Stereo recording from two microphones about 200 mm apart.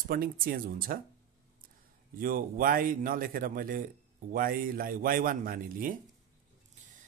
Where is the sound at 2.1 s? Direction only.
45° right (ahead or behind).